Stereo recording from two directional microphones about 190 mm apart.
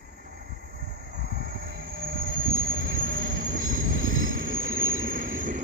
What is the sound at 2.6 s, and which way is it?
Train, 90° right.